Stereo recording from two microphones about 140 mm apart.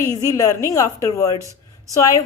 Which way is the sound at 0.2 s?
25° left (ahead or behind).